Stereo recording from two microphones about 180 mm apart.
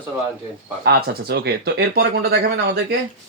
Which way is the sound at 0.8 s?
60° right (ahead or behind).